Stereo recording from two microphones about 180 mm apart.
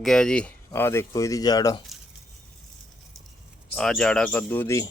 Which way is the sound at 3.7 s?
5° left (ahead or behind).